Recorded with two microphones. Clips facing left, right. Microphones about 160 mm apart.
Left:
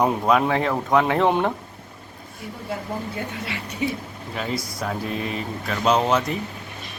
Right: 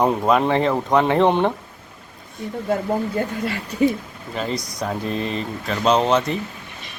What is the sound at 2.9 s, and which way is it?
Speech, 45° right (ahead or behind).